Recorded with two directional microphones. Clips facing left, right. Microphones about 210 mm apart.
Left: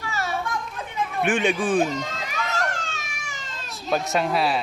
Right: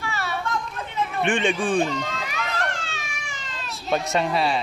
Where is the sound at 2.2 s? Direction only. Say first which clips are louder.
Left 1 dB; 45° left (ahead or behind).